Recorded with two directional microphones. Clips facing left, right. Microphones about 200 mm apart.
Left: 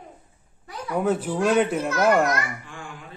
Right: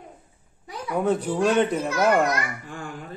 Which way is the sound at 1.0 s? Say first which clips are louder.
Right 1 dB; 5° left (ahead or behind).